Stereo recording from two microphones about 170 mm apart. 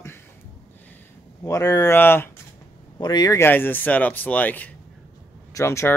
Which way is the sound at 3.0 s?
25° left (ahead or behind).